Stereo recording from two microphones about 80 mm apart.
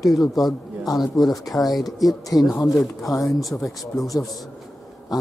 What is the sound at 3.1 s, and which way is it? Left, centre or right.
Speech, left.